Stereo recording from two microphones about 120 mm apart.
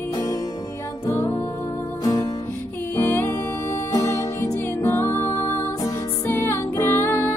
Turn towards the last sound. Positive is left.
turn(degrees=20)  # may be behind; listen again after turning